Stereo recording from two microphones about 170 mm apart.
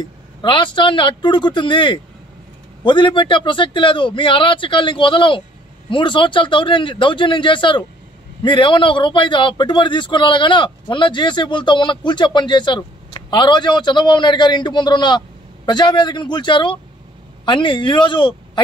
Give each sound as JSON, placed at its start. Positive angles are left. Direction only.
{"t": 0.0, "sound": "a man's voice", "side_deg": 30}